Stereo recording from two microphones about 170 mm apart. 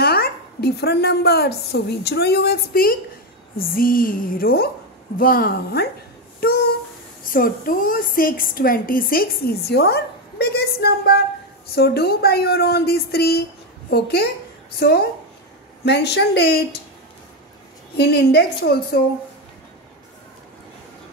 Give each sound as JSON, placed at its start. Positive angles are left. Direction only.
{"t": 0.0, "sound": "a woman's voice", "side_deg": 65}
{"t": 7.2, "sound": "a woman's voice", "side_deg": 55}
{"t": 15.8, "sound": "a woman's voice", "side_deg": 80}
{"t": 17.9, "sound": "a woman's voice", "side_deg": 70}